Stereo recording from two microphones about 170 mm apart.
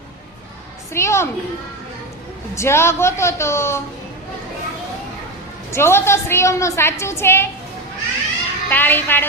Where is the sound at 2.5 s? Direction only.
15° left (ahead or behind).